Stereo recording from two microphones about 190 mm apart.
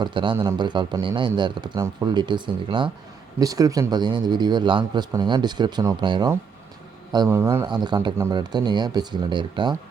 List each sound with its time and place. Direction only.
0.0 s a man's voice: 25° right (ahead or behind)